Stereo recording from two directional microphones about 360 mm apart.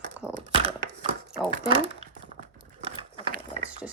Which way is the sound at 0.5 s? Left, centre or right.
Centre.